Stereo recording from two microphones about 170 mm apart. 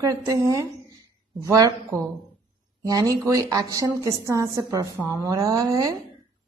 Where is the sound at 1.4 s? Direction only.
20° right (ahead or behind).